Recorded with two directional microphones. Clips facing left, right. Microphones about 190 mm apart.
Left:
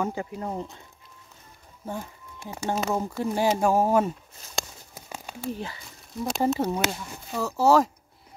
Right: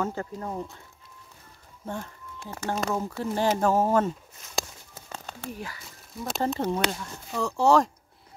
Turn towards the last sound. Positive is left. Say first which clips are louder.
# left 1 dB
turn(degrees=5)  # may be behind; listen again after turning